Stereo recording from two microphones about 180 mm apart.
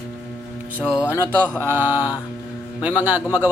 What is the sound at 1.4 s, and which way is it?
Speech, 10° left (ahead or behind).